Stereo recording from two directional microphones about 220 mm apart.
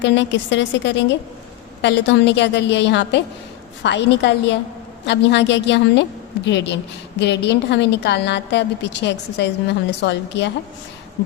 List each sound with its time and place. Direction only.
0.0 s a woman's voice: 55° left (ahead or behind)